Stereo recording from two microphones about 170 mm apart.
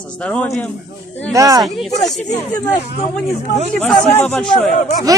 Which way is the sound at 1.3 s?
20° right (ahead or behind).